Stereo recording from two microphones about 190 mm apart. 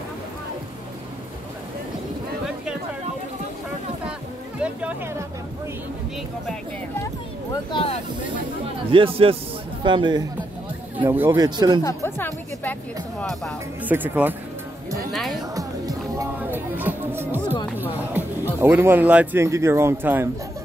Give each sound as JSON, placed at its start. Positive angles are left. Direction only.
{"t": 4.6, "sound": "a sound", "side_deg": -5}
{"t": 7.7, "sound": "speech", "side_deg": 30}
{"t": 8.9, "sound": "speech", "side_deg": -30}
{"t": 11.8, "sound": "music", "side_deg": 15}
{"t": 13.8, "sound": "speech", "side_deg": -10}
{"t": 15.5, "sound": "music", "side_deg": -20}
{"t": 18.6, "sound": "speech", "side_deg": -10}